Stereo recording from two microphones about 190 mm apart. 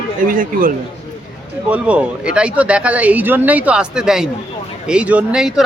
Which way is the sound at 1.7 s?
5° right (ahead or behind).